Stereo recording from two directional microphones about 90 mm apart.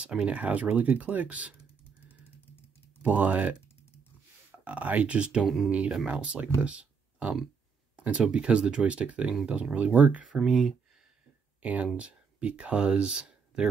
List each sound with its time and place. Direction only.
0.0 s speech: 10° right (ahead or behind)
3.0 s speech: 15° right (ahead or behind)
4.6 s speech: 15° right (ahead or behind)
10.2 s speech: 5° right (ahead or behind)
11.6 s speech: 15° right (ahead or behind)